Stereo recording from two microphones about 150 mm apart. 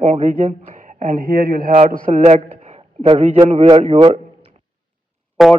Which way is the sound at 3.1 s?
40° right (ahead or behind).